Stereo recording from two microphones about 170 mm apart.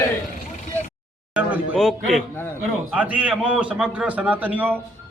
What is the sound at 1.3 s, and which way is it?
A man's voice, 10° right (ahead or behind).